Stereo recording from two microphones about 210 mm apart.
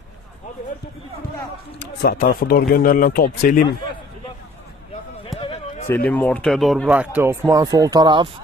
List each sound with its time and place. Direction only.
1.8 s speech: 45° left (ahead or behind)
5.4 s a sound: 25° left (ahead or behind)
6.1 s speech: 5° left (ahead or behind); by 8.3 s 20° right (ahead or behind)